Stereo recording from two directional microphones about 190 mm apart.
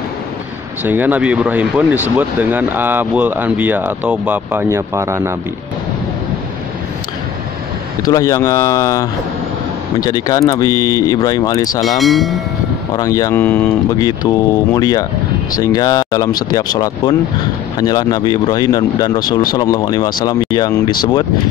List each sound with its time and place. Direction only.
0.8 s speech: 10° right (ahead or behind)
8.1 s speech: 20° left (ahead or behind)
12.0 s train: centre (ahead or behind)
12.9 s speech: 20° left (ahead or behind)